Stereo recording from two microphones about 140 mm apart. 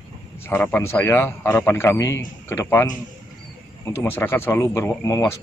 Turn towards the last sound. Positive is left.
turn(degrees=20)  # may be behind; listen again after turning